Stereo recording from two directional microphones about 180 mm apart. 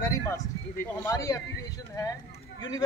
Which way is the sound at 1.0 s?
20° left (ahead or behind).